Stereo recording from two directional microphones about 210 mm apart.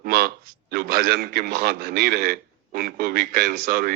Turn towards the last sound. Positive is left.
turn(degrees=-45)  # may be behind; listen again after turning